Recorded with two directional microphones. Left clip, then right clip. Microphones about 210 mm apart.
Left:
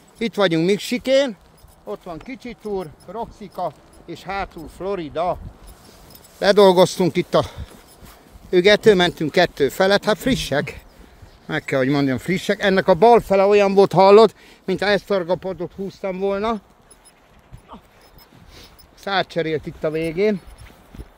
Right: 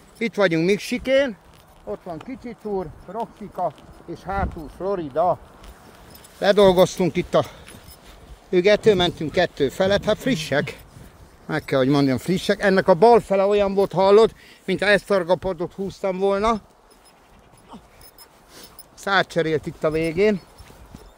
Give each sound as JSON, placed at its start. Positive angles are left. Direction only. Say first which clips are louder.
{"t": 0.2, "sound": "speech", "louder": "left 1 dB", "side_deg": 15}
{"t": 2.8, "sound": "speech", "louder": "even", "side_deg": 5}
{"t": 4.1, "sound": "speech", "louder": "even", "side_deg": -10}
{"t": 6.4, "sound": "speech", "louder": "left 2 dB", "side_deg": 25}
{"t": 11.4, "sound": "speech", "louder": "even", "side_deg": -5}
{"t": 13.3, "sound": "speech", "louder": "left 4 dB", "side_deg": 35}
{"t": 13.7, "sound": "speech", "louder": "left 6 dB", "side_deg": 55}
{"t": 14.0, "sound": "speech", "louder": "left 2 dB", "side_deg": 35}
{"t": 14.8, "sound": "speech", "louder": "right 1 dB", "side_deg": 20}
{"t": 15.0, "sound": "speech", "louder": "right 1 dB", "side_deg": 5}
{"t": 19.0, "sound": "speech", "louder": "right 1 dB", "side_deg": 0}